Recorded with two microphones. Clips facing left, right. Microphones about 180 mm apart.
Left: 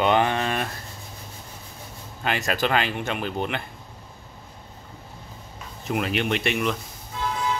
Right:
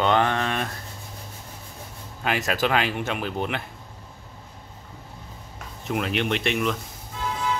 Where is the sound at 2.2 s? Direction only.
5° right (ahead or behind).